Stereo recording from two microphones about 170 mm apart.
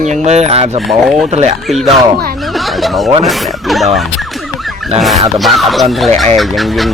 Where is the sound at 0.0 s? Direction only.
40° right (ahead or behind).